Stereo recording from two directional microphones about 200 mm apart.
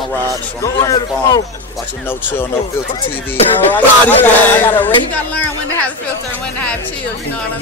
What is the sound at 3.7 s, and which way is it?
Speech, 10° left (ahead or behind).